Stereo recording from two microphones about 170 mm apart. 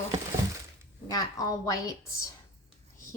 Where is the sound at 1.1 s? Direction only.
20° left (ahead or behind).